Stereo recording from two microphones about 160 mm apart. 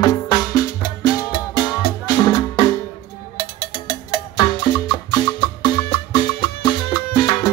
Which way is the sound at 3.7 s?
35° left (ahead or behind).